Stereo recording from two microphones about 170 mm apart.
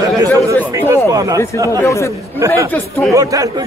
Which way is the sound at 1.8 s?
15° left (ahead or behind).